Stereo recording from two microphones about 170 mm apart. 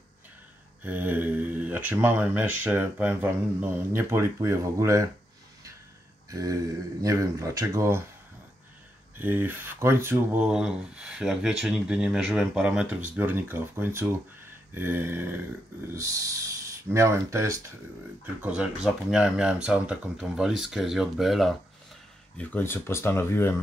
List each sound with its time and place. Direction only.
0.8 s speech: 10° right (ahead or behind)
6.3 s speech: 20° right (ahead or behind)
9.2 s speech: 10° right (ahead or behind)
22.4 s speech: 10° left (ahead or behind)